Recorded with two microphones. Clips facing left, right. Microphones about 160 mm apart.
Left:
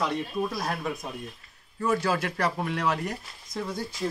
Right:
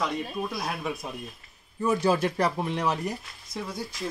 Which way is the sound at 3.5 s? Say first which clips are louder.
Left 2 dB; centre (ahead or behind).